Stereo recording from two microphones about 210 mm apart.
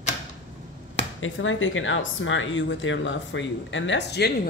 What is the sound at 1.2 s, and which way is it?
Speech, 70° left (ahead or behind).